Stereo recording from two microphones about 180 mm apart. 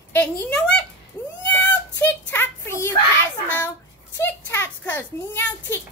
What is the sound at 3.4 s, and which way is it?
A child's voice, 10° left (ahead or behind).